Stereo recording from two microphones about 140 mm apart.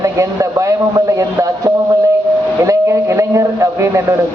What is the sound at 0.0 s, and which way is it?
A man's voice, 25° right (ahead or behind).